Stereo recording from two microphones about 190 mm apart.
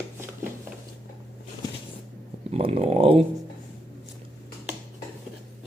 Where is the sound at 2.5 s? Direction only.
30° right (ahead or behind).